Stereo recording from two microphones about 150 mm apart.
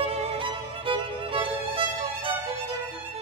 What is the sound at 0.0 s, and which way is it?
Music, 40° right (ahead or behind).